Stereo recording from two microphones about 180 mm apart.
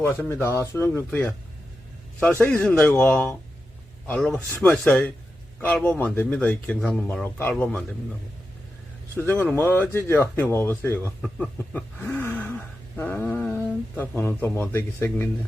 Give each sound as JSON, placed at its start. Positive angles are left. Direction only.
{"t": 0.0, "sound": "speech", "side_deg": 10}
{"t": 2.4, "sound": "a man's voice", "side_deg": 5}
{"t": 4.4, "sound": "speech", "side_deg": -15}
{"t": 4.6, "sound": "speech", "side_deg": 5}
{"t": 9.1, "sound": "speech", "side_deg": 10}